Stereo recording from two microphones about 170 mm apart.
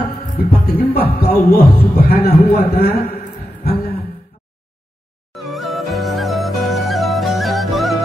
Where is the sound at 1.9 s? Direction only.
65° left (ahead or behind).